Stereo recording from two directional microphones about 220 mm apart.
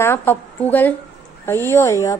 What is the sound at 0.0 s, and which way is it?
A woman's voice, 10° left (ahead or behind).